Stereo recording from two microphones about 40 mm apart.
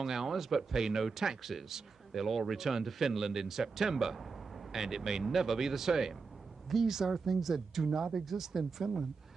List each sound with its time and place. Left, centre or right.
0.0 s speech: centre